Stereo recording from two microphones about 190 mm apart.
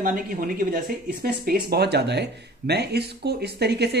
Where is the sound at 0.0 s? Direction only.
45° right (ahead or behind).